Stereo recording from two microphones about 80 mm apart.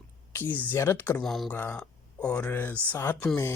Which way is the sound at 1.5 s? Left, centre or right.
Left.